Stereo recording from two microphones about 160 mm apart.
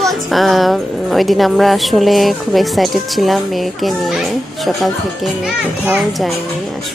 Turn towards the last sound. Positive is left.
turn(degrees=0)  # may be behind; listen again after turning